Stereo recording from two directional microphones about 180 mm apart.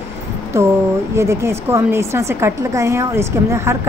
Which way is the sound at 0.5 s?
15° right (ahead or behind).